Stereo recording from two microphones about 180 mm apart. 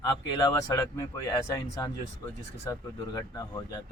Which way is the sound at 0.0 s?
15° left (ahead or behind).